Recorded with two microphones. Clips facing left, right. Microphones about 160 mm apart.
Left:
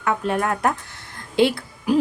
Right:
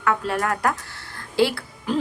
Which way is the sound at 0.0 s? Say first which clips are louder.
Left 1 dB; 20° left (ahead or behind).